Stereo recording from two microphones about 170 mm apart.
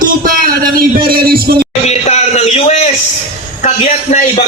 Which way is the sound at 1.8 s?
40° left (ahead or behind).